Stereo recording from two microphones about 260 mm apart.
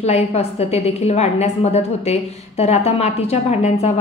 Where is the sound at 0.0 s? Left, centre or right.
Left.